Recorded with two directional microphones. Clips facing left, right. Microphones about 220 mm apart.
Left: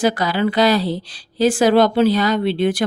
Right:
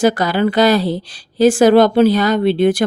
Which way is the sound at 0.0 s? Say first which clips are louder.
Right 4 dB; 45° right (ahead or behind).